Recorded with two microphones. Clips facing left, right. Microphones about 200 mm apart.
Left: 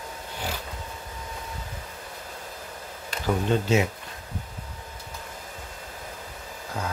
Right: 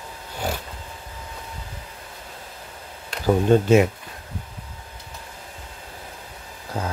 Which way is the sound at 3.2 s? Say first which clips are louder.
Right 7 dB; 50° right (ahead or behind).